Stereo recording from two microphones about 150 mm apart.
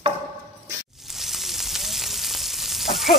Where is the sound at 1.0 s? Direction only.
Centre (ahead or behind).